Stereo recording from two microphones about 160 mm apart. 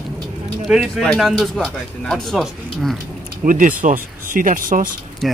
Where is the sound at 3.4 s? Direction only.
60° right (ahead or behind).